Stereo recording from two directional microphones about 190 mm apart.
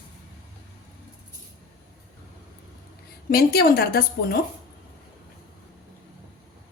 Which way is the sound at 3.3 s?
50° left (ahead or behind).